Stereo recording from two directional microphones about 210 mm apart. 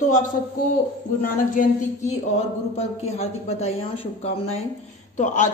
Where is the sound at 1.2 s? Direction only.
35° left (ahead or behind).